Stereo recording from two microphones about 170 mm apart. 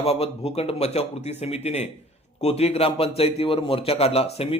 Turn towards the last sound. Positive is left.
turn(degrees=35)  # may be behind; listen again after turning